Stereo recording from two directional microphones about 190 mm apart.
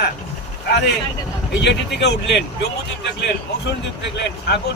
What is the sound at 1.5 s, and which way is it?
Speech, 65° left (ahead or behind).